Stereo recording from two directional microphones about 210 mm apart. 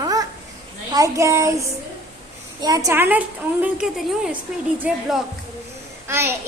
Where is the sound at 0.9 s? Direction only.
15° right (ahead or behind).